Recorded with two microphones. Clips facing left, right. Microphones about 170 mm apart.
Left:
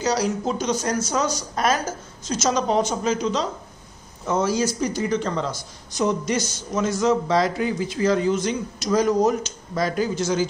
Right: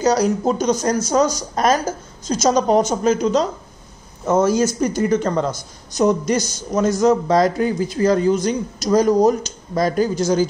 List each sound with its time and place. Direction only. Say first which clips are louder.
0.0 s a man's voice: right 6 dB; 45° right (ahead or behind)